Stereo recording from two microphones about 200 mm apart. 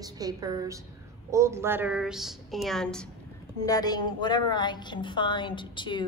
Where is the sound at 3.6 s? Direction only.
20° left (ahead or behind).